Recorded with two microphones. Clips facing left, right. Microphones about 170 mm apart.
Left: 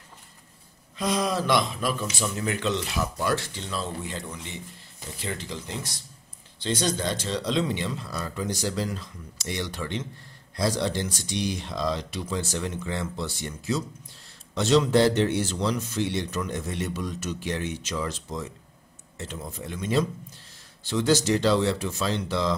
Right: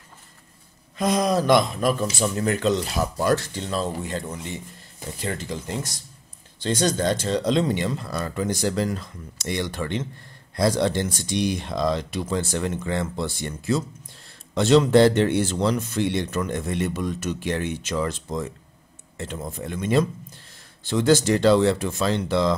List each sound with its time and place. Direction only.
0.9 s a man's voice: 45° right (ahead or behind)